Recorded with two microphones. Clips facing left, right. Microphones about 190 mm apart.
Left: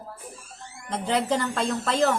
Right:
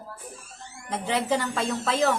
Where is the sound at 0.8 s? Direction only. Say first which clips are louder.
Left 1 dB; 5° right (ahead or behind).